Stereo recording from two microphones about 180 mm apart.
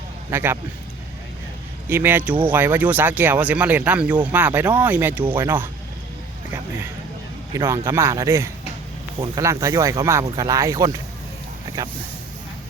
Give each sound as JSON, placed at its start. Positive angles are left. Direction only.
{"t": 0.3, "sound": "speech", "side_deg": -15}
{"t": 1.9, "sound": "speech", "side_deg": -10}
{"t": 7.5, "sound": "speech", "side_deg": -15}